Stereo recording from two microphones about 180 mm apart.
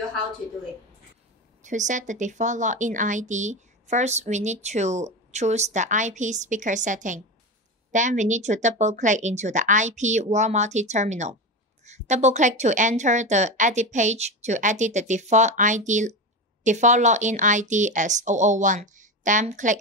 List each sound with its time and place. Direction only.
1.6 s speech: 45° right (ahead or behind)